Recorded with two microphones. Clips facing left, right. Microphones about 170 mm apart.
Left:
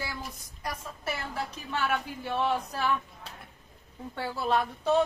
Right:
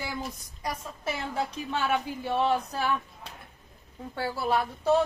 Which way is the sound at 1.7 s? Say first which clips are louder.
Right 2 dB; 15° right (ahead or behind).